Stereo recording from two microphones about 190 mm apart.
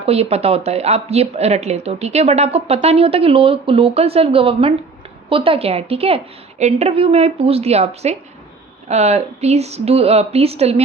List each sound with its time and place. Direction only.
0.0 s speech: 30° right (ahead or behind)